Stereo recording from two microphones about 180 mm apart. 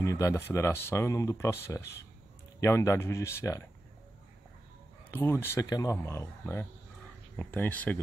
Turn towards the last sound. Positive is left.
turn(degrees=10)  # may be behind; listen again after turning